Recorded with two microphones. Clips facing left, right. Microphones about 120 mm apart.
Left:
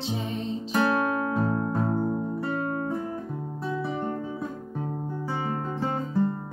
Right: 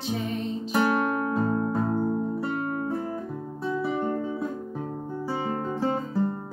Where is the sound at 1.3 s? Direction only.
Centre (ahead or behind).